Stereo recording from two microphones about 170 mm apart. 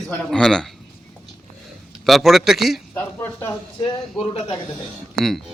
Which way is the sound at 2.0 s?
Centre (ahead or behind).